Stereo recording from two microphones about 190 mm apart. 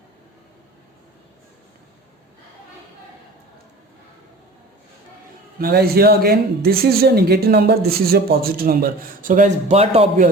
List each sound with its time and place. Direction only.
5.5 s speech: 55° right (ahead or behind); by 10.2 s 30° right (ahead or behind)